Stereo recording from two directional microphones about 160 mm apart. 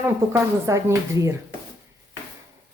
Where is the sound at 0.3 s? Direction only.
15° right (ahead or behind).